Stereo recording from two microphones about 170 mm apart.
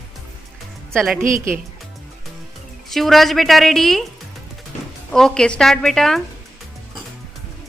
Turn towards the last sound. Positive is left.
turn(degrees=0)  # may be behind; listen again after turning